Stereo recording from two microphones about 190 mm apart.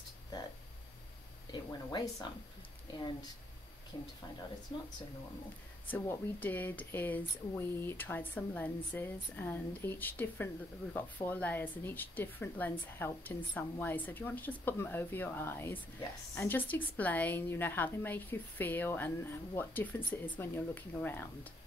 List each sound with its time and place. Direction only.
1.5 s speech: 20° left (ahead or behind)
5.9 s speech: 10° left (ahead or behind)